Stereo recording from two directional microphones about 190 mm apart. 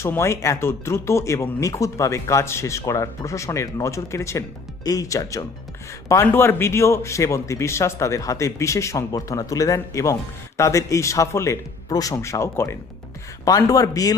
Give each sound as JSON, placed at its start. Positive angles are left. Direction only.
{"t": 0.0, "sound": "speech", "side_deg": 15}